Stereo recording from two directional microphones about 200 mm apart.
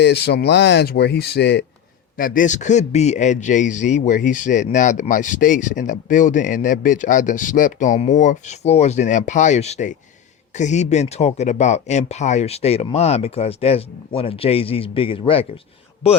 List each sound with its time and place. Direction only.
0.0 s speech: 55° left (ahead or behind)
2.1 s a man's voice: 45° left (ahead or behind); by 15.4 s 25° left (ahead or behind)